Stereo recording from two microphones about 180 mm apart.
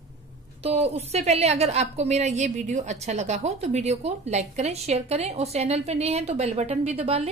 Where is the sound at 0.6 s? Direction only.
35° right (ahead or behind).